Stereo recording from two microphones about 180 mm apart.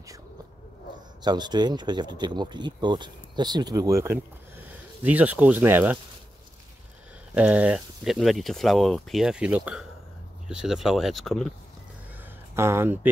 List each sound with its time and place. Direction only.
1.2 s speech: 25° right (ahead or behind)
7.3 s speech: 5° right (ahead or behind)
12.5 s speech: 15° right (ahead or behind)